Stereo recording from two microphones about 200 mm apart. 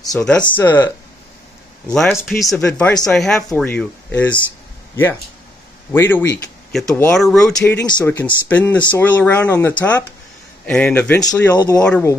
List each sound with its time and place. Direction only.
0.1 s speech: 5° left (ahead or behind)
5.9 s speech: 10° left (ahead or behind)
11.5 s speech: 20° left (ahead or behind)